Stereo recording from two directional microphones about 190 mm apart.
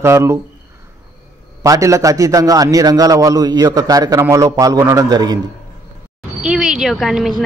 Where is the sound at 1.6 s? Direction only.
15° right (ahead or behind).